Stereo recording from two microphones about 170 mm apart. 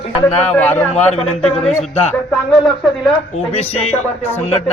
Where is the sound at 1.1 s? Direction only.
40° left (ahead or behind).